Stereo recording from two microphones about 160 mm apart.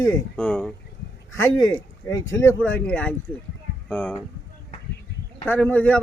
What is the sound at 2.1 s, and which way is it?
Speech, 20° left (ahead or behind).